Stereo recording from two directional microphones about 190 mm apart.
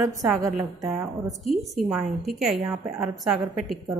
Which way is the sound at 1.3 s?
Centre (ahead or behind).